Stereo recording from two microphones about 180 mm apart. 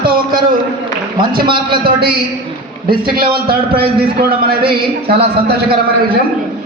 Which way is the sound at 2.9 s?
55° right (ahead or behind).